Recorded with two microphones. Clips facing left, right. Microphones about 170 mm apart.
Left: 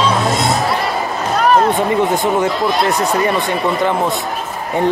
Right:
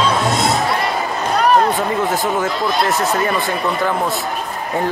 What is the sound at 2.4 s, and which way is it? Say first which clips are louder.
Speech: left 3 dB; centre (ahead or behind).